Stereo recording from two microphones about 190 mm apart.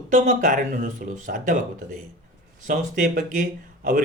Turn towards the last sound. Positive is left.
turn(degrees=-45)  # may be behind; listen again after turning